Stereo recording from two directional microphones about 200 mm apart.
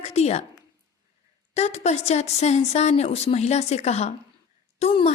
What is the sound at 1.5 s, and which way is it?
Speech, 35° left (ahead or behind).